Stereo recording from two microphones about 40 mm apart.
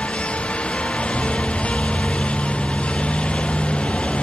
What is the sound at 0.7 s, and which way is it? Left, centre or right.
Music, left.